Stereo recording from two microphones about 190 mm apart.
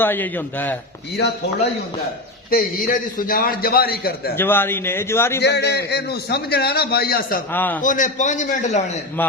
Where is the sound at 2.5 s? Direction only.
45° left (ahead or behind).